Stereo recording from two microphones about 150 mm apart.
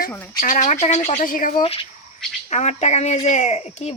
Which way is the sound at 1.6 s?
35° left (ahead or behind).